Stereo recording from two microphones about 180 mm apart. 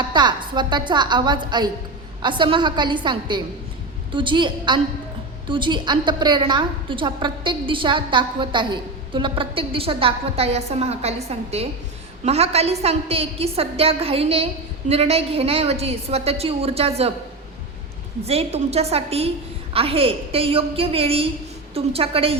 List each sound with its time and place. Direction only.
0.1 s a woman's voice: 25° right (ahead or behind)
18.3 s a woman's voice: 35° right (ahead or behind)